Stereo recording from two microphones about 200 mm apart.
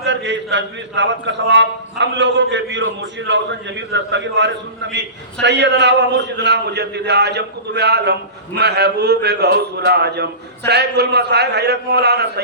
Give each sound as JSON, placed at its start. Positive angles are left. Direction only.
{"t": 0.0, "sound": "a man's voice", "side_deg": -60}